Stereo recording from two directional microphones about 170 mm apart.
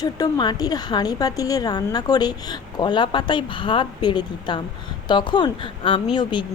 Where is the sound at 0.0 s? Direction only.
25° left (ahead or behind).